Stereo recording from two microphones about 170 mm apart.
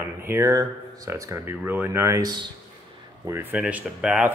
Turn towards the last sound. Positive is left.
turn(degrees=-5)  # may be behind; listen again after turning